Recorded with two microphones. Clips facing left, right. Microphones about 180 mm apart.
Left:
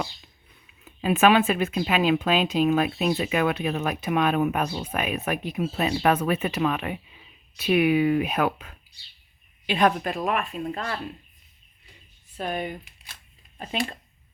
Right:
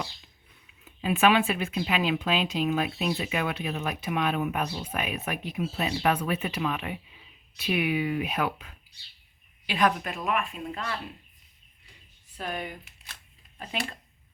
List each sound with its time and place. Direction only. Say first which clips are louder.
1.0 s speech: left 4 dB; 45° left (ahead or behind)
9.6 s a woman's voice: left 4 dB; 30° left (ahead or behind)
12.4 s speech: left 5 dB; 25° left (ahead or behind)